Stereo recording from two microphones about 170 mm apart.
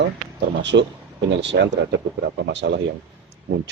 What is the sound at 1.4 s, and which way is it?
Speech, 90° right.